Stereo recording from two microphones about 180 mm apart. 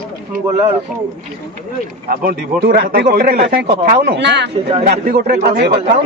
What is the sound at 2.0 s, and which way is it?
Speech, 60° right (ahead or behind).